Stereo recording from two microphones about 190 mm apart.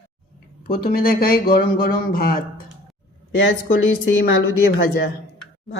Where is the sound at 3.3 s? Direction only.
80° left.